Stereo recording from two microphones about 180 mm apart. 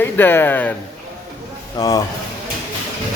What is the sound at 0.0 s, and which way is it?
Speech, 10° left (ahead or behind).